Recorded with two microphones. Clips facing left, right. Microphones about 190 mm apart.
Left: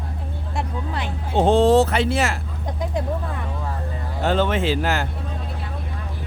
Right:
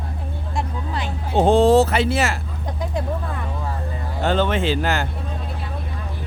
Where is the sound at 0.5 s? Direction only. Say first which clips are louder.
Even; 60° left (ahead or behind).